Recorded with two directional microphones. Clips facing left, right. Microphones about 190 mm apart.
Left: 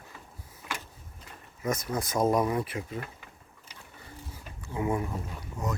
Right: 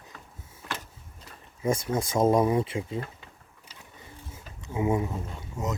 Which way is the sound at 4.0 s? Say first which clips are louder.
Left 1 dB; 20° right (ahead or behind).